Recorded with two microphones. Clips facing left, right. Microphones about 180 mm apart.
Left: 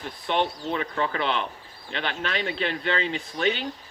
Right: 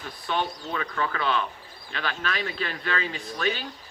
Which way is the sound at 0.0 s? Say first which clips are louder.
Left 3 dB; 20° left (ahead or behind).